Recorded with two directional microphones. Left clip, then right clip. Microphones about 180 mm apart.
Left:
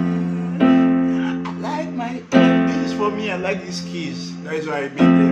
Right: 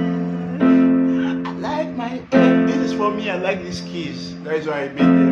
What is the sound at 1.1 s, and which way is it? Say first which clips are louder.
Music: right 1 dB; 15° right (ahead or behind).